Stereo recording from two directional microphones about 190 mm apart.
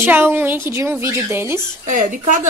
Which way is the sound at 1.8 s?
45° right (ahead or behind).